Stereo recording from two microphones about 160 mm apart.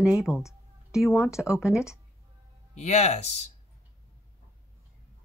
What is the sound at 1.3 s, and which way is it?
Speech, 20° left (ahead or behind).